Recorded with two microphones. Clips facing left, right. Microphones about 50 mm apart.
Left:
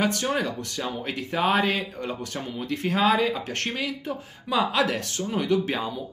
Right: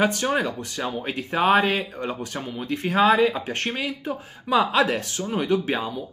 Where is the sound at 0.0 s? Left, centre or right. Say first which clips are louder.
Right 3 dB; centre.